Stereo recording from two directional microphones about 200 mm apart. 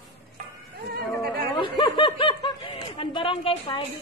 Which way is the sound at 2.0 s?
25° left (ahead or behind).